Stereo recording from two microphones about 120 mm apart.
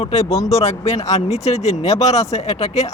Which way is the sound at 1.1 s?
65° left (ahead or behind).